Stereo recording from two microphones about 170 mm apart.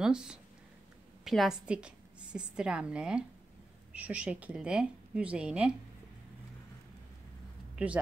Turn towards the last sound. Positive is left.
turn(degrees=-10)  # may be behind; listen again after turning